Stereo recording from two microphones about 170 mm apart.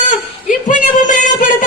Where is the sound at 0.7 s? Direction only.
50° left (ahead or behind).